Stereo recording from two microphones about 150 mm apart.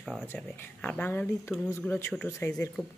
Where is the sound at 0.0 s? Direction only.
Centre (ahead or behind).